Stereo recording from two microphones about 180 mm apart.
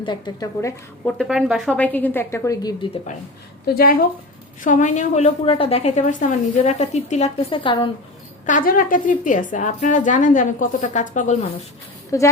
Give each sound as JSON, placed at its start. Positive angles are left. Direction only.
{"t": 0.0, "sound": "a woman's voice", "side_deg": 25}
{"t": 1.0, "sound": "a woman's voice", "side_deg": 0}
{"t": 3.8, "sound": "a woman's voice", "side_deg": 55}
{"t": 8.4, "sound": "a woman's voice", "side_deg": 50}
{"t": 12.1, "sound": "a woman's voice", "side_deg": 15}